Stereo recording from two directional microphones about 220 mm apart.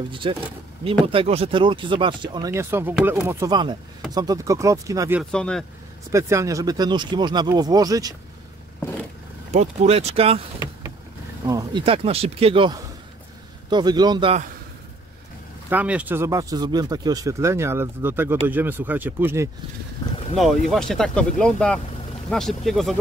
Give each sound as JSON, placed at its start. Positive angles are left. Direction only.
{"t": 0.1, "sound": "speech", "side_deg": -25}
{"t": 5.3, "sound": "speech", "side_deg": 5}
{"t": 6.1, "sound": "speech", "side_deg": -15}
{"t": 9.5, "sound": "speech", "side_deg": -30}
{"t": 15.7, "sound": "speech", "side_deg": -5}
{"t": 20.3, "sound": "speech", "side_deg": 0}